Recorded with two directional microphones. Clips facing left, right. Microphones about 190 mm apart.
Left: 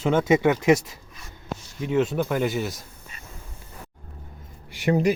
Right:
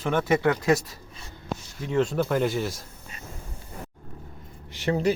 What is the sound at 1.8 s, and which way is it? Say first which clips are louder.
Speech: left 1 dB; 5° left (ahead or behind).